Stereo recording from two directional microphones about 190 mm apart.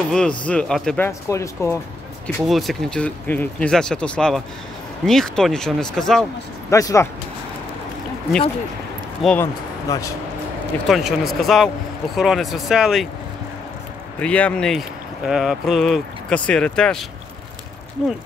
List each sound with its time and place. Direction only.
0.1 s speech: 5° left (ahead or behind)
2.2 s speech: centre (ahead or behind)
6.7 s speech: 15° left (ahead or behind)
9.2 s speech: 5° left (ahead or behind)
9.8 s speech: 15° left (ahead or behind)
10.9 s speech: centre (ahead or behind)
14.2 s speech: 5° left (ahead or behind)